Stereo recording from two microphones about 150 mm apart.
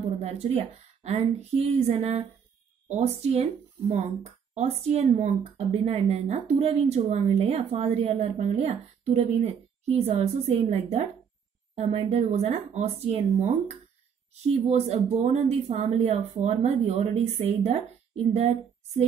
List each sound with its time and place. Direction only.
0.2 s speech: 45° right (ahead or behind)